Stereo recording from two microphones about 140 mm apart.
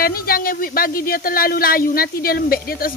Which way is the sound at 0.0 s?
90° left.